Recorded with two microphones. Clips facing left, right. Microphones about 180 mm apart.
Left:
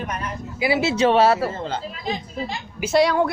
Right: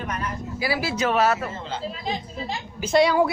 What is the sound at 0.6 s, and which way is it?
Speech, 25° left (ahead or behind).